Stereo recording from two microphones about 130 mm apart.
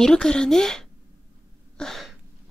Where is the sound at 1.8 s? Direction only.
5° left (ahead or behind).